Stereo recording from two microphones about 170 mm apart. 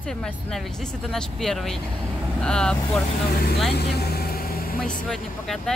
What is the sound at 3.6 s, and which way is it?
Vehicle, 75° left (ahead or behind).